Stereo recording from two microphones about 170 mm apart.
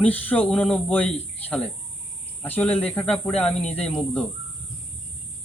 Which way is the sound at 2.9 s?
10° left (ahead or behind).